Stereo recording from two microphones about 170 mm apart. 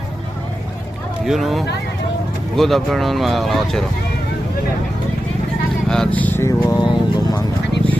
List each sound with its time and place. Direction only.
1.2 s speech: centre (ahead or behind)
5.9 s speech: 5° left (ahead or behind); by 7.4 s 20° left (ahead or behind)
7.7 s a sound: 90° left